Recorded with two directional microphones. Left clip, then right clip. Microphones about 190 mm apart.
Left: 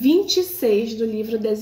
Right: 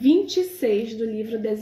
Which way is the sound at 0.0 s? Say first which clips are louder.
Left 2 dB; 10° left (ahead or behind).